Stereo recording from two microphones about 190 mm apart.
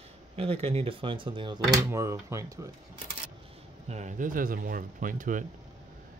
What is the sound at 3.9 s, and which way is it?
Speech, 40° right (ahead or behind).